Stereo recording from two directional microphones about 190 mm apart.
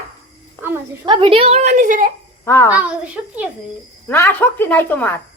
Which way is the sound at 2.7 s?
5° right (ahead or behind).